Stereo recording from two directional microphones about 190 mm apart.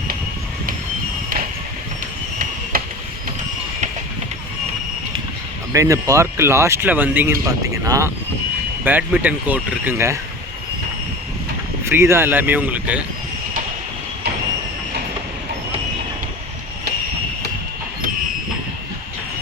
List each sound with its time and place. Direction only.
2.7 s a sound: 50° right (ahead or behind)
5.7 s speech: 15° right (ahead or behind)
11.9 s speech: 15° right (ahead or behind)